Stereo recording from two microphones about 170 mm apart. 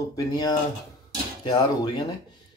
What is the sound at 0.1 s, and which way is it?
Speech, 20° left (ahead or behind).